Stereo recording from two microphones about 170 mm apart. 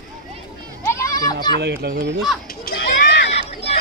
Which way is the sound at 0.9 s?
20° left (ahead or behind).